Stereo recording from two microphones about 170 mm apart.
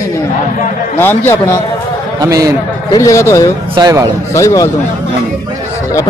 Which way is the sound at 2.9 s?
20° left (ahead or behind).